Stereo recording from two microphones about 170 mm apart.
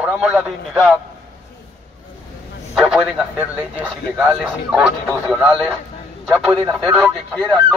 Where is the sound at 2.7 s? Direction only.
Centre (ahead or behind).